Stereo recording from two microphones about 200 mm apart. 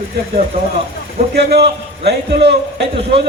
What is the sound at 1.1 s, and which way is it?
A man's voice, 55° right (ahead or behind).